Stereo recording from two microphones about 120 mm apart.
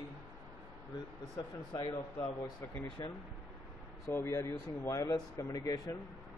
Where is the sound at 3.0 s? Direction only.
35° left (ahead or behind).